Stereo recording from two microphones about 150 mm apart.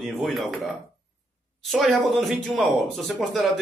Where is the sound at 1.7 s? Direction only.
Centre (ahead or behind).